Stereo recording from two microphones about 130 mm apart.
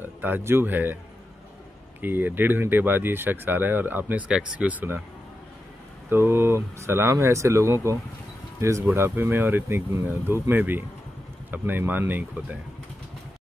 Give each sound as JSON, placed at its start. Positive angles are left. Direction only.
{"t": 0.0, "sound": "speech", "side_deg": -15}
{"t": 2.0, "sound": "speech", "side_deg": -15}
{"t": 6.0, "sound": "speech", "side_deg": -15}